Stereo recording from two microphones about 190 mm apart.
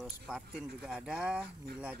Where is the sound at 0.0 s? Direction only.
Centre (ahead or behind).